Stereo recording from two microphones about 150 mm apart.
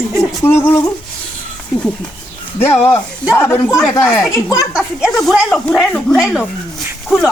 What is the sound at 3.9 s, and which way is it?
Speech, 20° left (ahead or behind).